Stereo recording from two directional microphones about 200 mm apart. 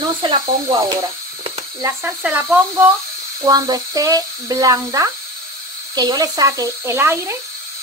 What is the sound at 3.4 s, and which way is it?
Speech, 20° right (ahead or behind).